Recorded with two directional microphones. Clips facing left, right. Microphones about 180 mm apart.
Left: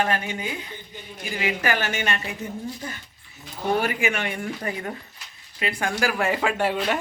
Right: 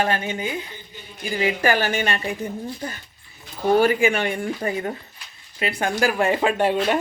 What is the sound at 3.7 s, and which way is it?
Speech, 30° right (ahead or behind).